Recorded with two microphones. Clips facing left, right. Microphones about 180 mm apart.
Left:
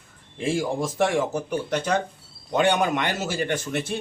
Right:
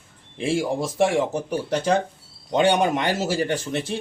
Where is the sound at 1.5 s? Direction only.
30° right (ahead or behind).